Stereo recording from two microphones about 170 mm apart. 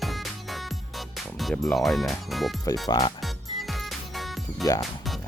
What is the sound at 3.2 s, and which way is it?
Music, centre (ahead or behind).